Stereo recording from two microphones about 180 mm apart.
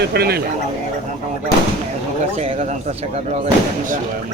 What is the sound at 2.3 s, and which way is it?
Speech, 35° right (ahead or behind).